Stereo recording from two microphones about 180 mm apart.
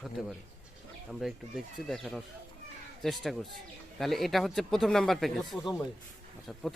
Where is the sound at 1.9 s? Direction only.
Centre (ahead or behind).